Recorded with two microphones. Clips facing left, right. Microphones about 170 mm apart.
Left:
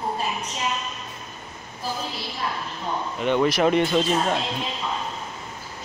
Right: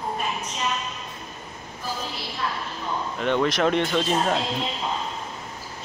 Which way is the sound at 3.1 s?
5° left (ahead or behind).